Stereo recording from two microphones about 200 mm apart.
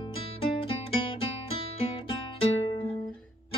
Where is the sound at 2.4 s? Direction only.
25° left (ahead or behind).